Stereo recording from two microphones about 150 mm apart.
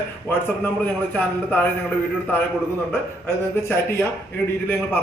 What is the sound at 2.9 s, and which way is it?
A man's voice, 15° left (ahead or behind).